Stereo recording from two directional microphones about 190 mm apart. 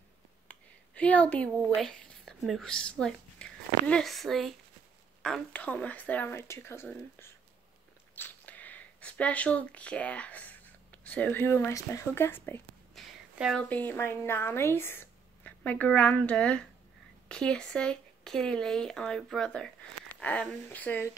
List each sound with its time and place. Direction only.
0.5 s speech: 5° left (ahead or behind)
12.9 s a woman's voice: centre (ahead or behind)